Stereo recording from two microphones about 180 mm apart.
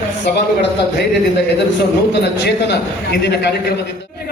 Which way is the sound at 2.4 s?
65° left (ahead or behind).